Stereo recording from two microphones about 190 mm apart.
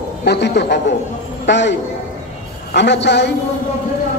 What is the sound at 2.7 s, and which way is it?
Speech, 65° left (ahead or behind).